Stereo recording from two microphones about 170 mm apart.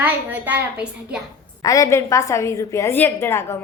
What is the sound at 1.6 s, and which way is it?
A woman's voice, 20° left (ahead or behind).